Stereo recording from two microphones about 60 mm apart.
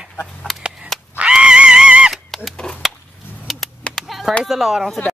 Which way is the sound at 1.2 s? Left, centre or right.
Centre.